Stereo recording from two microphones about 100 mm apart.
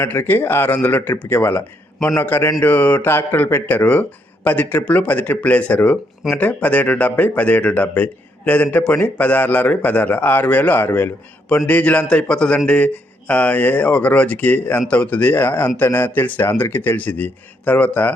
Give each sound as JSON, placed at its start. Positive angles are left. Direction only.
{"t": 0.0, "sound": "speech", "side_deg": 20}